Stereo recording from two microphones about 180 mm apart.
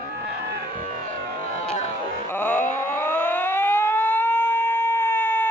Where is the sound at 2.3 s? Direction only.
10° left (ahead or behind).